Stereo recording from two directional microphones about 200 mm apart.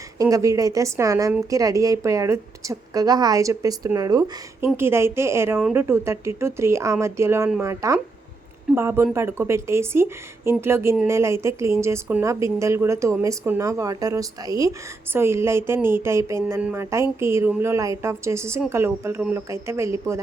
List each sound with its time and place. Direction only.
0.2 s a woman's voice: 15° right (ahead or behind)